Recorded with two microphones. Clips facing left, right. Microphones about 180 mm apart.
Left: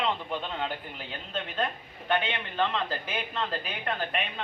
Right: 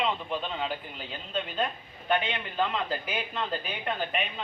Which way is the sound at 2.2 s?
5° right (ahead or behind).